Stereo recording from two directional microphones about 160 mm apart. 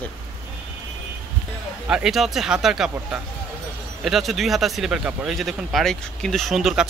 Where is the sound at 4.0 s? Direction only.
Centre (ahead or behind).